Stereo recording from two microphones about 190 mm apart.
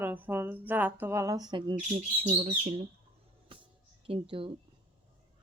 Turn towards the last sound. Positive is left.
turn(degrees=-30)  # may be behind; listen again after turning